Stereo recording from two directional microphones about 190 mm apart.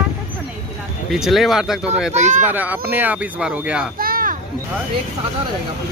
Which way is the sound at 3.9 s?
50° right (ahead or behind).